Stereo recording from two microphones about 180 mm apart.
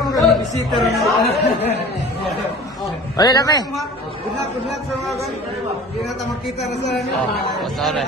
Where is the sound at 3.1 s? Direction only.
20° left (ahead or behind).